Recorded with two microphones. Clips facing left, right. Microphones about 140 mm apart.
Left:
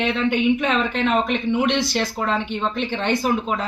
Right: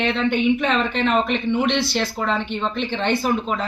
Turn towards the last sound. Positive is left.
turn(degrees=5)  # may be behind; listen again after turning